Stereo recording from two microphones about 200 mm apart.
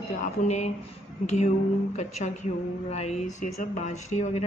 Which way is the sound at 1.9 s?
35° left (ahead or behind).